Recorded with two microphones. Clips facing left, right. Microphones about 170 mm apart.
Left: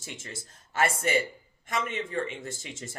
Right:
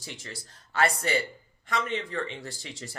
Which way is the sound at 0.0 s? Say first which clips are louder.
Even; 20° left (ahead or behind).